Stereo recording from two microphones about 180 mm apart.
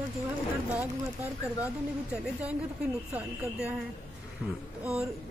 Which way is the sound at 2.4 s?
5° right (ahead or behind).